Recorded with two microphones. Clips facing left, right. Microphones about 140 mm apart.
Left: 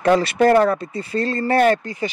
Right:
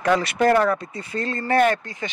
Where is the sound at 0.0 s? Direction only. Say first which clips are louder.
Left 4 dB; 30° left (ahead or behind).